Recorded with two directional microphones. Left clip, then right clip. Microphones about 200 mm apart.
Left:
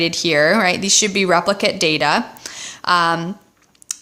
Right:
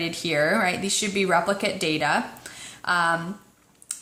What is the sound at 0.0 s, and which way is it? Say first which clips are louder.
Speech: left 8 dB; 45° left (ahead or behind).